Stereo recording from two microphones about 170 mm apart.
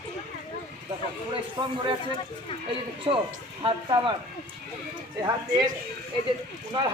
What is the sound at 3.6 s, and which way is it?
Speech, 30° right (ahead or behind).